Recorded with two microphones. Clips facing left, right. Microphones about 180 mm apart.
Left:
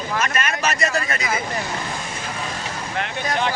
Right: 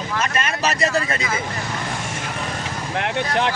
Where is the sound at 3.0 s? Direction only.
70° right (ahead or behind).